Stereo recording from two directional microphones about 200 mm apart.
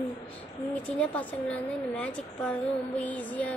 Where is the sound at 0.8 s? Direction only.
5° left (ahead or behind).